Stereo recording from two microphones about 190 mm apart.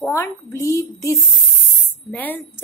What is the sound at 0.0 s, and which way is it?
A woman's voice, 15° left (ahead or behind).